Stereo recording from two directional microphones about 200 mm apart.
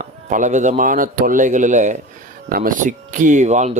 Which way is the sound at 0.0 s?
40° right (ahead or behind).